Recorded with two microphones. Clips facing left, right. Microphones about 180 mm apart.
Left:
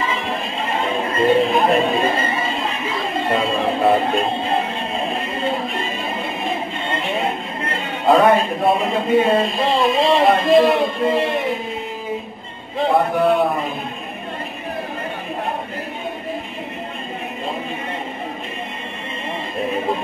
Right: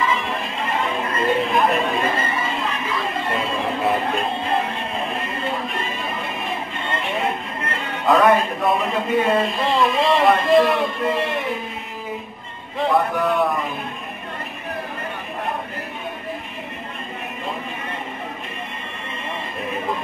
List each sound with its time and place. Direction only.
0.0 s music: 25° left (ahead or behind)
12.8 s a man's voice: 30° left (ahead or behind)